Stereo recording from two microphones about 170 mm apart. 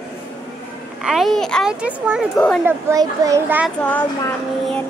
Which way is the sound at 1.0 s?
Centre (ahead or behind).